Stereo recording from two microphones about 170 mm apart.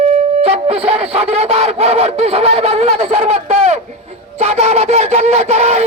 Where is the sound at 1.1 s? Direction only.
35° right (ahead or behind).